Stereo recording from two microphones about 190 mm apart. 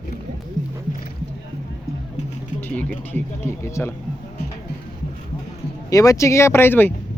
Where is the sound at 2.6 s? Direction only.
5° left (ahead or behind).